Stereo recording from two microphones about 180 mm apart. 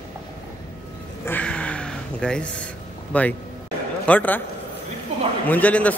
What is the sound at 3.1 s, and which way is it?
Speech, 10° left (ahead or behind).